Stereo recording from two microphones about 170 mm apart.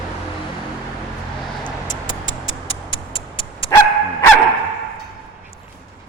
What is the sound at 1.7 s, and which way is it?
Vehicle, 25° left (ahead or behind).